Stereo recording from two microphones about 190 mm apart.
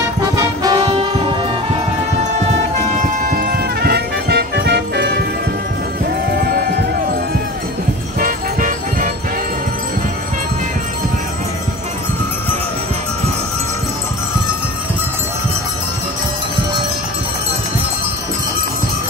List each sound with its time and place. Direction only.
0.0 s music: 15° right (ahead or behind)
3.3 s music: 55° right (ahead or behind)
6.4 s music: 55° right (ahead or behind)
8.2 s music: 45° right (ahead or behind)